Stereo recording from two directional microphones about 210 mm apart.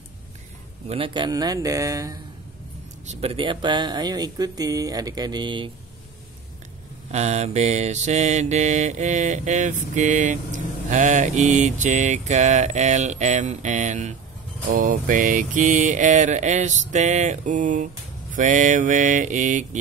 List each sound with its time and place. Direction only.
0.8 s speech: 25° right (ahead or behind)
3.1 s speech: 30° right (ahead or behind)
7.1 s mantra: 30° right (ahead or behind)